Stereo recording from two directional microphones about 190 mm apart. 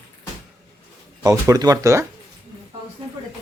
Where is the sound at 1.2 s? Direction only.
15° right (ahead or behind).